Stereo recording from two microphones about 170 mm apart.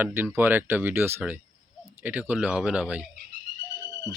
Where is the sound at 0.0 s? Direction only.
15° right (ahead or behind).